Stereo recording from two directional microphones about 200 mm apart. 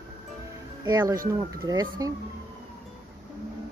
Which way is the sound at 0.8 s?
15° right (ahead or behind).